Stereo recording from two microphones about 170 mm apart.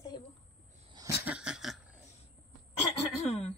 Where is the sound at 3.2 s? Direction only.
35° left (ahead or behind).